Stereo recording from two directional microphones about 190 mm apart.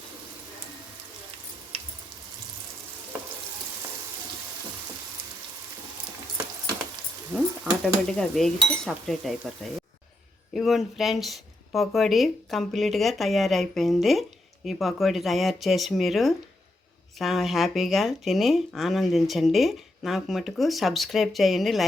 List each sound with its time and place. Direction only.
1.7 s a sound: 30° right (ahead or behind)
7.3 s speech: centre (ahead or behind)
10.5 s speech: centre (ahead or behind)